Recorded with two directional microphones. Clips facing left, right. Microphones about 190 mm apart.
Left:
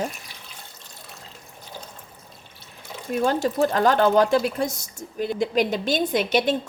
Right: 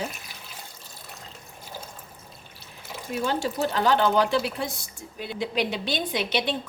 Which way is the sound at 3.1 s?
45° left (ahead or behind).